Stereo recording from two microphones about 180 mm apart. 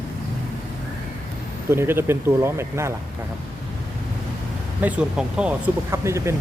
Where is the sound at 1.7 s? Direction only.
15° right (ahead or behind).